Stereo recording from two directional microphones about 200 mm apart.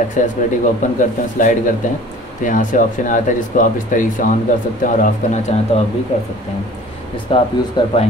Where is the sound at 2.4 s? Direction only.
40° left (ahead or behind).